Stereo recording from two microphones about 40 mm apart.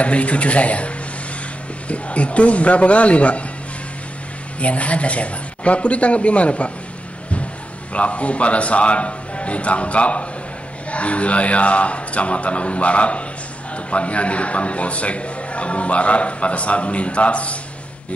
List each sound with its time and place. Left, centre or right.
0.0 s a man's voice: left
4.6 s a man's voice: left
7.9 s a man's voice: left